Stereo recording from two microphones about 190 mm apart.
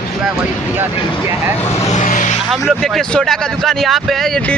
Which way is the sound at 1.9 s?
40° left (ahead or behind).